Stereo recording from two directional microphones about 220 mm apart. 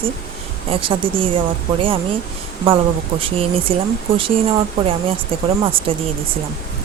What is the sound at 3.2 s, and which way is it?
Speech, 25° right (ahead or behind).